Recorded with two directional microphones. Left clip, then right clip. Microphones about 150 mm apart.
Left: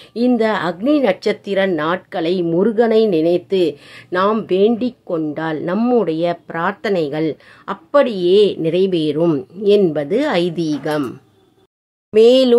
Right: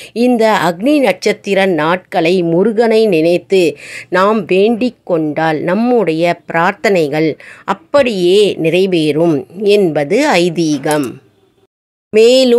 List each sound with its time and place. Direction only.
0.3 s speech: 25° right (ahead or behind)
5.8 s speech: 15° right (ahead or behind)
6.0 s speech: 30° right (ahead or behind)
12.1 s speech: 30° right (ahead or behind)